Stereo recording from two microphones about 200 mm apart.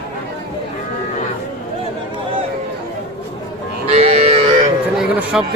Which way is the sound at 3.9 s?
30° right (ahead or behind).